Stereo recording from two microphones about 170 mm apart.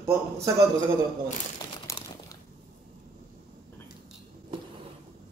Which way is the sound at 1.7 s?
25° left (ahead or behind).